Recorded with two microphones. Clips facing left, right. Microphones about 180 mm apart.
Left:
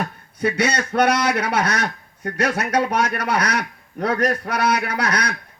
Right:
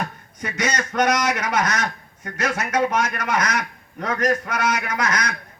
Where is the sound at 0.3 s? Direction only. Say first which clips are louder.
Left 5 dB; 30° left (ahead or behind).